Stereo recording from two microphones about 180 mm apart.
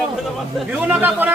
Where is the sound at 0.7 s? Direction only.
5° right (ahead or behind).